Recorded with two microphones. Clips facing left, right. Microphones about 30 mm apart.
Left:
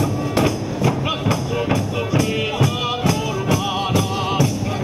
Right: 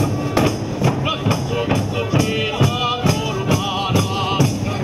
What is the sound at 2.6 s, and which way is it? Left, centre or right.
Music, centre.